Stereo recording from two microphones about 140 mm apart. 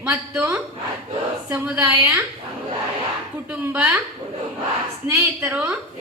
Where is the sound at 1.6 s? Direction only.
15° right (ahead or behind).